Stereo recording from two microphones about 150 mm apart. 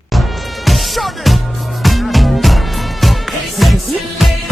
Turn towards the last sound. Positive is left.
turn(degrees=0)  # may be behind; listen again after turning